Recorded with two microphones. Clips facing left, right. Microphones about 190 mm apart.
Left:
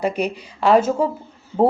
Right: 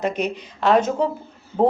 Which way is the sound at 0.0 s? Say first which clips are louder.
Left 1 dB; 10° left (ahead or behind).